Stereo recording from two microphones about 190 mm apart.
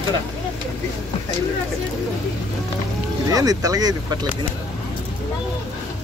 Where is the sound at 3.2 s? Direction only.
20° right (ahead or behind).